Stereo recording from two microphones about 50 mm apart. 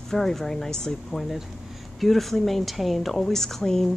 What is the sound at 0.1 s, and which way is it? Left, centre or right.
A woman's voice, centre.